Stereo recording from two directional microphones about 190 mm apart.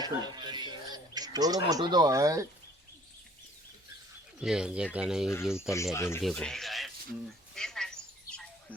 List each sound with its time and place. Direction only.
0.0 s speech: 20° right (ahead or behind)
4.4 s speech: 5° right (ahead or behind)
5.5 s speech: 15° left (ahead or behind)
6.2 s speech: 5° left (ahead or behind)
7.5 s a sound: 5° left (ahead or behind)